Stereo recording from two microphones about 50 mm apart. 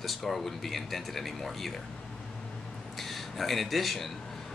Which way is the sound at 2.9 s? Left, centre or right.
Centre.